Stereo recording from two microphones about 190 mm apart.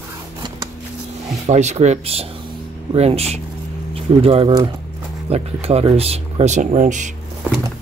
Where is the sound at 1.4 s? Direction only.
35° right (ahead or behind).